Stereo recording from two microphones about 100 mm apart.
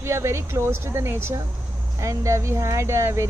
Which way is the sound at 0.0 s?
30° right (ahead or behind).